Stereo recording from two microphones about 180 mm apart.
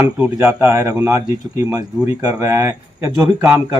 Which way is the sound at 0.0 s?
10° right (ahead or behind).